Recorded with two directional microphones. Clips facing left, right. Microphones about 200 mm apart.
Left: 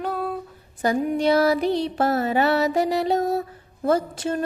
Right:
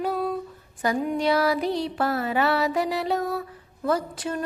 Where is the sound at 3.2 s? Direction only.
40° left (ahead or behind).